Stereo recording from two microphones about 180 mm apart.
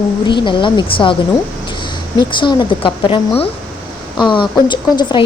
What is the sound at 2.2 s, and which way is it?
Speech, 25° left (ahead or behind).